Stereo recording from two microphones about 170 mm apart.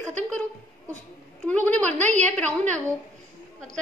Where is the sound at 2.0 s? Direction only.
45° right (ahead or behind).